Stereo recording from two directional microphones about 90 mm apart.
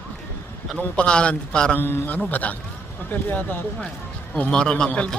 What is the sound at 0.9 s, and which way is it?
Speech, 10° left (ahead or behind).